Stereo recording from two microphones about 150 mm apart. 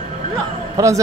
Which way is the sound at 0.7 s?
20° right (ahead or behind).